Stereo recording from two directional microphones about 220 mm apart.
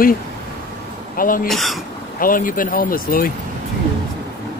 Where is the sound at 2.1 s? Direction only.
40° left (ahead or behind).